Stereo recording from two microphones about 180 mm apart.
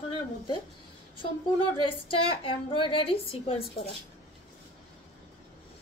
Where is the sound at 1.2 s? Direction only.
30° left (ahead or behind).